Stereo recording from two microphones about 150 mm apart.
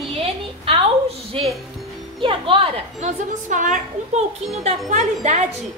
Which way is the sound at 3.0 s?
55° right (ahead or behind).